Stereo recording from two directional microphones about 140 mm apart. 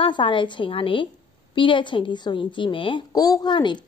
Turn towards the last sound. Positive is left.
turn(degrees=35)  # may be behind; listen again after turning